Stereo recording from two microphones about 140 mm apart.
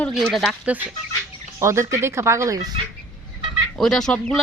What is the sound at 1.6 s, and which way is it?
Speech, 20° right (ahead or behind).